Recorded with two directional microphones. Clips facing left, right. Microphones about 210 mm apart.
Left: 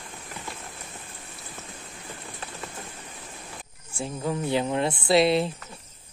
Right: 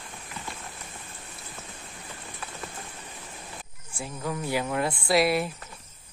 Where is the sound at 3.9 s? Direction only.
25° left (ahead or behind).